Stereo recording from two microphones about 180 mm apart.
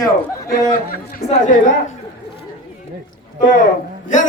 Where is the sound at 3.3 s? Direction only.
50° left (ahead or behind).